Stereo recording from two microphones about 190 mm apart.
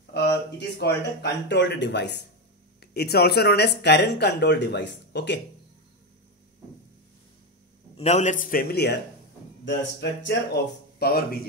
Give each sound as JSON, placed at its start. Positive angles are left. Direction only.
{"t": 0.0, "sound": "speech", "side_deg": 65}
{"t": 8.0, "sound": "a man's voice", "side_deg": 35}
{"t": 9.7, "sound": "speech", "side_deg": 70}